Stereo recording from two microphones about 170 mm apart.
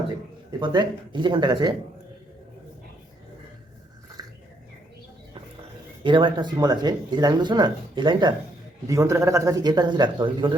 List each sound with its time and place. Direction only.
0.6 s speech: 25° right (ahead or behind)
6.0 s speech: 30° right (ahead or behind)